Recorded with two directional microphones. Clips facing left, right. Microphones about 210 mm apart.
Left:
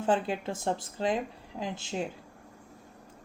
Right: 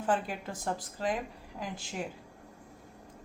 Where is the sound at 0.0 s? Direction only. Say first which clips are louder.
Left 4 dB; 25° left (ahead or behind).